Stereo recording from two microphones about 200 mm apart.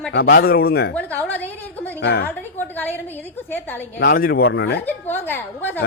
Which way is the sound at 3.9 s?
50° left (ahead or behind).